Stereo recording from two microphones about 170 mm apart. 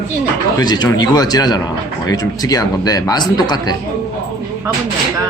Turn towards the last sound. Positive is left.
turn(degrees=25)  # may be behind; listen again after turning